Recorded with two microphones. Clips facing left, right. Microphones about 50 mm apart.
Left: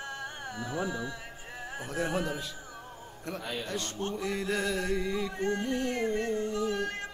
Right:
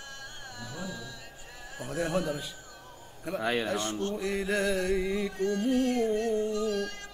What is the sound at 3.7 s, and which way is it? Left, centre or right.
Speech, centre.